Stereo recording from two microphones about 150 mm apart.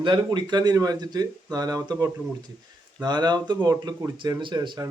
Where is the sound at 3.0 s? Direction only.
30° right (ahead or behind).